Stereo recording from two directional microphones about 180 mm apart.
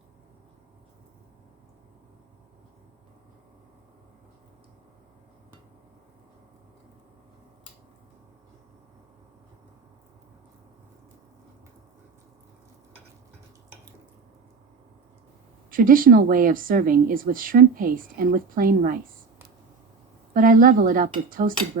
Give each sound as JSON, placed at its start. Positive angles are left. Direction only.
{"t": 15.7, "sound": "speech", "side_deg": -50}
{"t": 20.3, "sound": "speech", "side_deg": -50}